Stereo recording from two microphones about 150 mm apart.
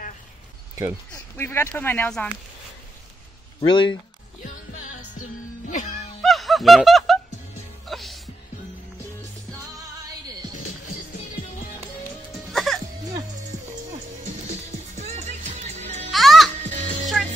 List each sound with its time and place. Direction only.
1.1 s speech: 15° left (ahead or behind)
3.6 s speech: 30° left (ahead or behind)
5.7 s music: 55° left (ahead or behind)
6.2 s music: centre (ahead or behind)
12.5 s music: centre (ahead or behind)
15.0 s music: 45° right (ahead or behind)
16.1 s music: centre (ahead or behind)
16.6 s music: 55° right (ahead or behind)